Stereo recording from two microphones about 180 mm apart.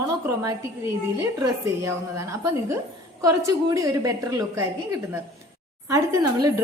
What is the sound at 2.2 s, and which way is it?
A woman's voice, 15° right (ahead or behind).